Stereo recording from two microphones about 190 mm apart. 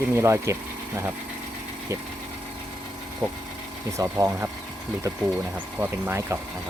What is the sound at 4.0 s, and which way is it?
Speech, 15° right (ahead or behind).